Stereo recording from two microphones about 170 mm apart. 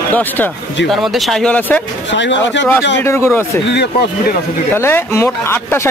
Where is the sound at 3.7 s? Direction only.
75° left (ahead or behind).